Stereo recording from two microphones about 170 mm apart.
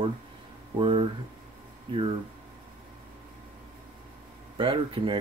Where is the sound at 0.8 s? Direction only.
30° right (ahead or behind).